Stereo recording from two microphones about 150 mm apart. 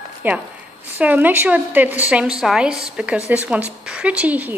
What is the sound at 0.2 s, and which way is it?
Speech, 10° right (ahead or behind).